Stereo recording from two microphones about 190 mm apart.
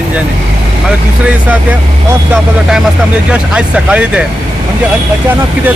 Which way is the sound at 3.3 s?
5° right (ahead or behind).